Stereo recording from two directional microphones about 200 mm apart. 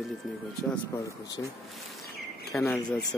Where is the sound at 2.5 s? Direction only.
5° left (ahead or behind).